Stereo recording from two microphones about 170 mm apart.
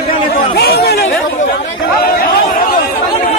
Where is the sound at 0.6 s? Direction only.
65° left (ahead or behind).